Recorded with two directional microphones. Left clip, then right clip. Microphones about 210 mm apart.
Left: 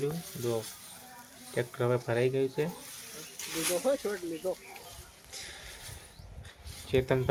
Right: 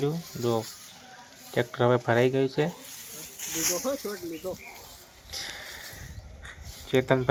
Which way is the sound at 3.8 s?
45° right (ahead or behind).